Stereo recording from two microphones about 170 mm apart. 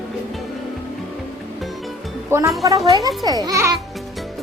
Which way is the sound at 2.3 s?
15° right (ahead or behind).